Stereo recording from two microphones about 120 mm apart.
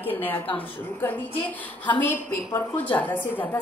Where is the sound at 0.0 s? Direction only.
15° left (ahead or behind).